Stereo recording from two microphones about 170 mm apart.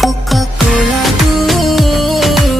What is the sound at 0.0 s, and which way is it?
Music, centre (ahead or behind).